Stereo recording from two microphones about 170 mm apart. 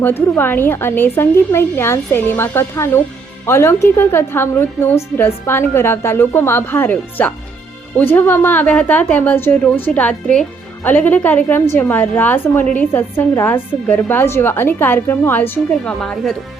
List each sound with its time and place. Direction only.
0.0 s a woman's voice: 10° left (ahead or behind)